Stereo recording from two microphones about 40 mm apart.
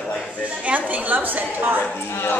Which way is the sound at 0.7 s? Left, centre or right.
Right.